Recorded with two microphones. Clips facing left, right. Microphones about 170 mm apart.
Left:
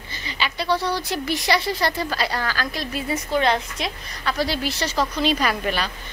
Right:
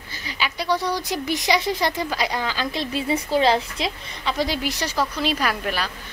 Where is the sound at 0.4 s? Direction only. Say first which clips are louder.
Even; 15° right (ahead or behind).